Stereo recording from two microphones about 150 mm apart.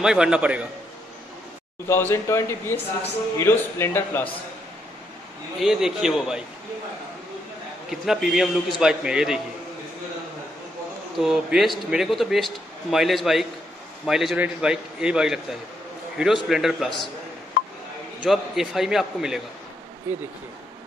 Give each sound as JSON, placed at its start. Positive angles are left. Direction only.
{"t": 0.0, "sound": "a man's voice", "side_deg": -5}
{"t": 1.9, "sound": "speech", "side_deg": 15}
{"t": 5.6, "sound": "a man's voice", "side_deg": 0}
{"t": 7.9, "sound": "a man's voice", "side_deg": -5}
{"t": 11.1, "sound": "a man's voice", "side_deg": -5}
{"t": 18.2, "sound": "a man's voice", "side_deg": -5}